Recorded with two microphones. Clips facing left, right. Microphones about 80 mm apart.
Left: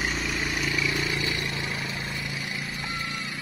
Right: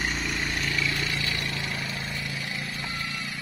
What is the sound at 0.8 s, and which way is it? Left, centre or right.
Vehicle, centre.